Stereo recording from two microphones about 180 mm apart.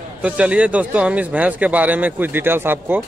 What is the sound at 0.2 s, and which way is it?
Speech, 5° right (ahead or behind).